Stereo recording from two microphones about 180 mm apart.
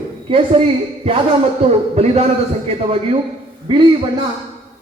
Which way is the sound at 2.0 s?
35° right (ahead or behind).